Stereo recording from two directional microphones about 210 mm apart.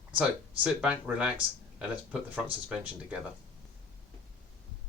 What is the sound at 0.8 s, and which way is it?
Speech, 5° right (ahead or behind).